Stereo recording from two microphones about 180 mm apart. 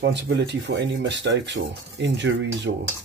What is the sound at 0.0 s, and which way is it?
Speech, 75° right (ahead or behind).